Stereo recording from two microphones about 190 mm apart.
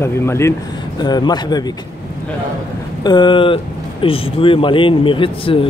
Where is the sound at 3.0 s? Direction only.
25° left (ahead or behind).